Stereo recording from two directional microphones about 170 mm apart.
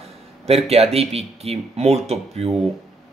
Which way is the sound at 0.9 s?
35° right (ahead or behind).